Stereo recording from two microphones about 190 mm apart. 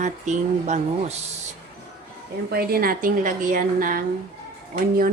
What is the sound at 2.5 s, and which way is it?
A woman's voice, 55° right (ahead or behind).